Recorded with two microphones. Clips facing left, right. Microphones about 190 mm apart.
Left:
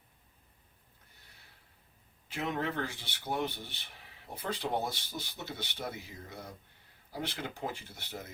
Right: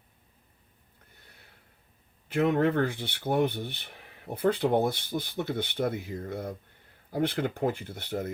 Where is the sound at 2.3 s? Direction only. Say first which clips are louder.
Right 11 dB; 55° right (ahead or behind).